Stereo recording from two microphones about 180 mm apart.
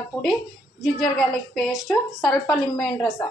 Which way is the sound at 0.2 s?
Centre (ahead or behind).